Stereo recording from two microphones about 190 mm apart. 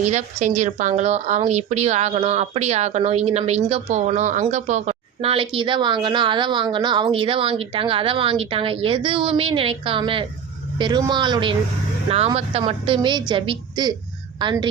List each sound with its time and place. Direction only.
0.0 s a woman's voice: 40° right (ahead or behind)